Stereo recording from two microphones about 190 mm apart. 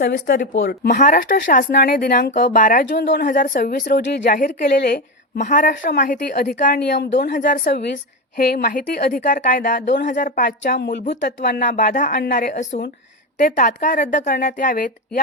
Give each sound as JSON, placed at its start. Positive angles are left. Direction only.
{"t": 0.0, "sound": "a woman's voice", "side_deg": 50}
{"t": 2.9, "sound": "a woman's voice", "side_deg": 60}
{"t": 7.3, "sound": "a woman's voice", "side_deg": 45}
{"t": 8.4, "sound": "a woman's voice", "side_deg": 50}
{"t": 9.8, "sound": "speech", "side_deg": 65}
{"t": 10.1, "sound": "a woman's voice", "side_deg": 45}
{"t": 10.8, "sound": "speech", "side_deg": 60}
{"t": 11.4, "sound": "a woman's voice", "side_deg": 50}